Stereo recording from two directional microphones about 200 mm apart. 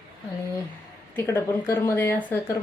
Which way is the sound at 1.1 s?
10° left (ahead or behind).